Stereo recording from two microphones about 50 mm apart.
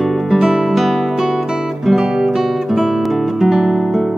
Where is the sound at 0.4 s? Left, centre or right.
Centre.